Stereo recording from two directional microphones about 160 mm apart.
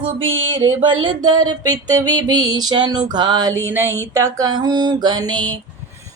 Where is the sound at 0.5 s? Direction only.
30° right (ahead or behind).